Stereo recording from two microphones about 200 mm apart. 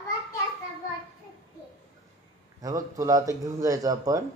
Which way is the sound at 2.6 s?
15° right (ahead or behind).